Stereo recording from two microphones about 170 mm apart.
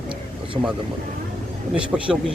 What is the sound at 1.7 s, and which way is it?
Speech, 5° right (ahead or behind).